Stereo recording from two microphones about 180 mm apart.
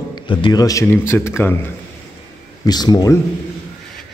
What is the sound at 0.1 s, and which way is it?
A man's voice, 25° left (ahead or behind).